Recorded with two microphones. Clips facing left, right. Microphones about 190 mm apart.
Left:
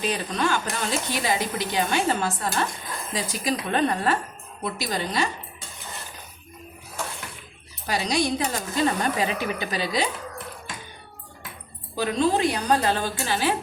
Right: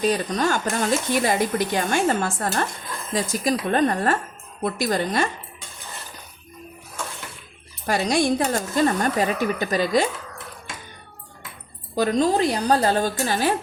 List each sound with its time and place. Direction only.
0.0 s speech: 45° right (ahead or behind)
7.9 s speech: 50° right (ahead or behind)
11.9 s a woman's voice: 40° right (ahead or behind)